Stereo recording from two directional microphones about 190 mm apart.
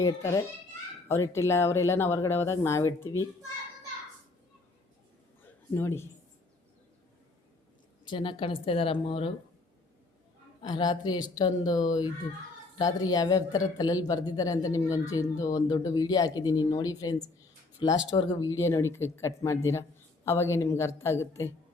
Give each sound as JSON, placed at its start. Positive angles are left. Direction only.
{"t": 0.0, "sound": "speech", "side_deg": 15}
{"t": 5.4, "sound": "a sound", "side_deg": 10}
{"t": 8.0, "sound": "speech", "side_deg": 25}
{"t": 10.6, "sound": "speech", "side_deg": 20}
{"t": 18.2, "sound": "speech", "side_deg": 25}